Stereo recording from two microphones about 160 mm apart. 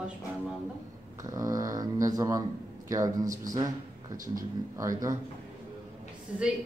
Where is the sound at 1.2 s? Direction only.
20° right (ahead or behind).